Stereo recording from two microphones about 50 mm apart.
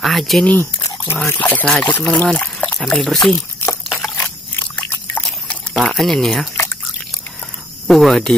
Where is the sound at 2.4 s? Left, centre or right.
Left.